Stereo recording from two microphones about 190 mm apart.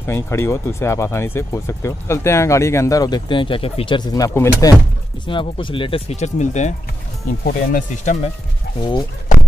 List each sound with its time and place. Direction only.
0.0 s speech: 15° left (ahead or behind)
5.2 s speech: 25° left (ahead or behind)